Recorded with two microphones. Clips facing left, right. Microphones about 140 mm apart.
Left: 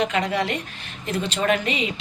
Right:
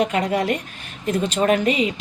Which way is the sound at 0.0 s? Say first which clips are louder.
Right 3 dB; 45° right (ahead or behind).